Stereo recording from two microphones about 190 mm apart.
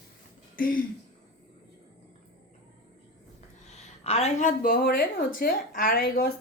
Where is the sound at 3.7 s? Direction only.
35° left (ahead or behind).